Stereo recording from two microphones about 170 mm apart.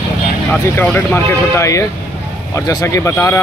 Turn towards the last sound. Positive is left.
turn(degrees=15)  # may be behind; listen again after turning